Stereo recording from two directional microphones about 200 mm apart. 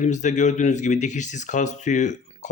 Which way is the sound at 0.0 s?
35° left (ahead or behind).